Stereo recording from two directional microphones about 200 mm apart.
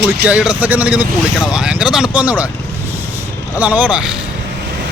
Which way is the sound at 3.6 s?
5° right (ahead or behind).